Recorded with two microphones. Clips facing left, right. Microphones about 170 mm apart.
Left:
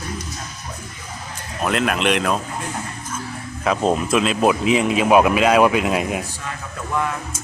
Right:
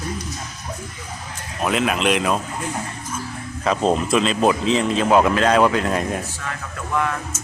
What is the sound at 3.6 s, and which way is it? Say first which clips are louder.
Speech: even; 5° left (ahead or behind).